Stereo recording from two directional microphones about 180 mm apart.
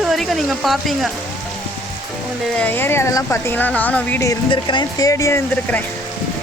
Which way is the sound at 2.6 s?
10° left (ahead or behind).